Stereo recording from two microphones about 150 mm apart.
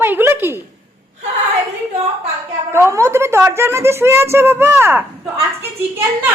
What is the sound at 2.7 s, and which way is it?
A woman's voice, 20° right (ahead or behind).